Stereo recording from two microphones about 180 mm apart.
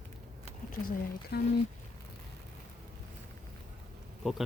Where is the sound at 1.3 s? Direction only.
65° left (ahead or behind).